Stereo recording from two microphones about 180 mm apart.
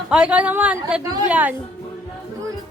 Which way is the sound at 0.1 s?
5° right (ahead or behind).